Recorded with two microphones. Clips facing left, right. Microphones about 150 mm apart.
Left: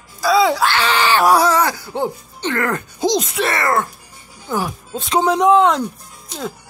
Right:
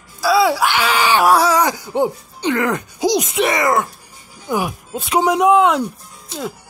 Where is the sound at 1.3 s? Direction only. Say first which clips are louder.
Even; 10° right (ahead or behind).